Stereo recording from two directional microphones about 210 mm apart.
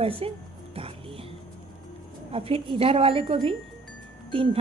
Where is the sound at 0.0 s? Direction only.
25° right (ahead or behind).